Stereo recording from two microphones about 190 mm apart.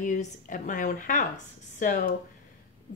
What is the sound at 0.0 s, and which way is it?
A woman's voice, 40° left (ahead or behind).